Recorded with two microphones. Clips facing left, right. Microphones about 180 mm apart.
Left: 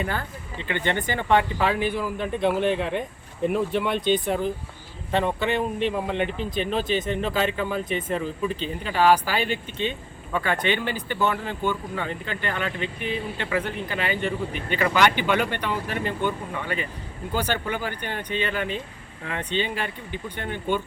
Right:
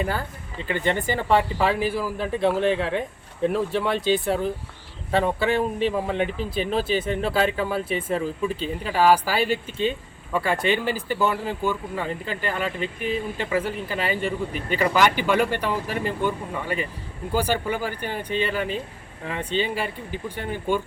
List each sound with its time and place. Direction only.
0.7 s speech: centre (ahead or behind)
12.8 s speech: 40° right (ahead or behind)
13.3 s speech: 5° right (ahead or behind)